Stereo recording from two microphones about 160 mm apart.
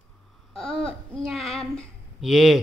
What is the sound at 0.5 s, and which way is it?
Babbling, 35° left (ahead or behind).